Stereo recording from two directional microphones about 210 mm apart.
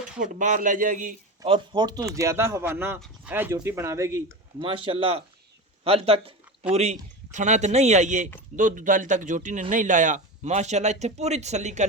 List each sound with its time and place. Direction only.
0.2 s speech: 35° right (ahead or behind)
1.4 s speech: 20° right (ahead or behind)